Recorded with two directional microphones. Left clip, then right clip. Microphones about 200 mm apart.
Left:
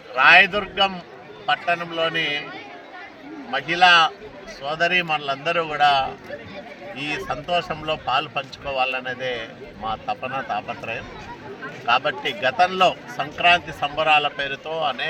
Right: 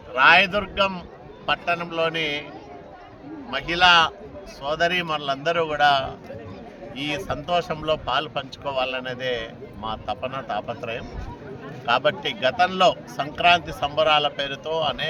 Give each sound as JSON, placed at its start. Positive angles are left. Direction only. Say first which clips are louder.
{"t": 0.2, "sound": "a man's voice", "louder": "left 2 dB", "side_deg": -25}
{"t": 3.5, "sound": "a man's voice", "louder": "left 2 dB", "side_deg": -25}